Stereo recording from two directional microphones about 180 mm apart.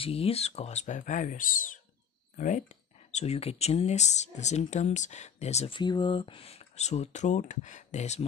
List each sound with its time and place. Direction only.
0.0 s speech: 35° left (ahead or behind)
5.8 s speech: 25° left (ahead or behind)